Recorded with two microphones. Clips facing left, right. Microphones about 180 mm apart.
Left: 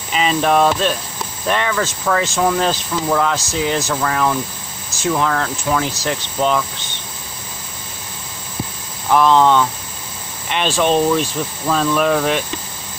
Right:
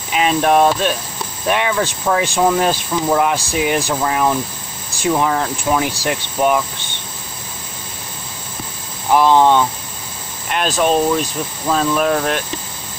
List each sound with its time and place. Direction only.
0.1 s speech: 5° right (ahead or behind)
9.1 s speech: 15° right (ahead or behind)
10.8 s speech: 5° right (ahead or behind)